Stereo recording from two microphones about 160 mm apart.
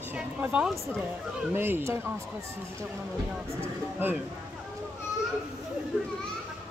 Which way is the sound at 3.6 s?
10° right (ahead or behind).